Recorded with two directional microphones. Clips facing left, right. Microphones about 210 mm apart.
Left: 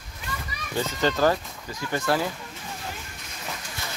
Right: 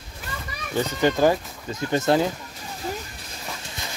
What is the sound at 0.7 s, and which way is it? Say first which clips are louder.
Speech: right 3 dB; 15° right (ahead or behind).